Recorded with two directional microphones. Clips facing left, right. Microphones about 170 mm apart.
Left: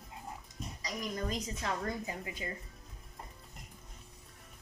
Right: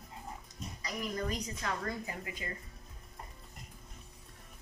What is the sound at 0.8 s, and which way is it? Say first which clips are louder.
A woman's voice: right 1 dB; 20° left (ahead or behind).